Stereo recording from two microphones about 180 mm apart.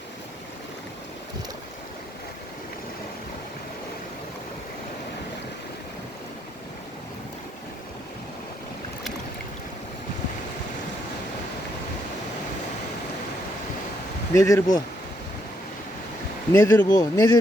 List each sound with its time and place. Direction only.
14.3 s speech: 15° left (ahead or behind)
16.5 s speech: 15° left (ahead or behind)